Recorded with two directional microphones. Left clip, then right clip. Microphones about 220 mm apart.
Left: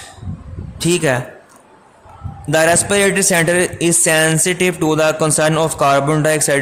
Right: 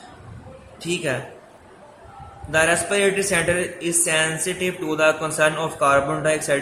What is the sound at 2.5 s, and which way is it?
Speech, 50° left (ahead or behind).